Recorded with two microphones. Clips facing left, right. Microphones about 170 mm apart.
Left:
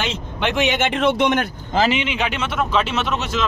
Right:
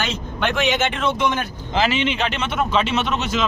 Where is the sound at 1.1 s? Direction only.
65° left (ahead or behind).